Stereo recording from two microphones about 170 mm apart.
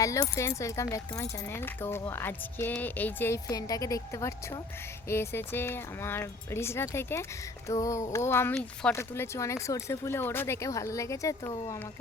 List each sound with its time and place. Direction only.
0.0 s speech: 20° left (ahead or behind)